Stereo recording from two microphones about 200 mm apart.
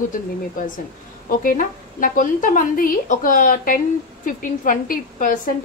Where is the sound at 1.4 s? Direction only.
45° left (ahead or behind).